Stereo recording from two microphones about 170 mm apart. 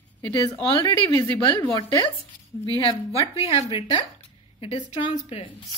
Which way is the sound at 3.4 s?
35° left (ahead or behind).